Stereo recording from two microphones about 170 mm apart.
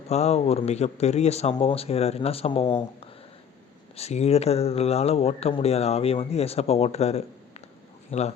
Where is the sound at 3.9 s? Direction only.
40° left (ahead or behind).